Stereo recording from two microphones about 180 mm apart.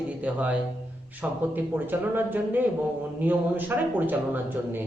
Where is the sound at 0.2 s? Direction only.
10° right (ahead or behind).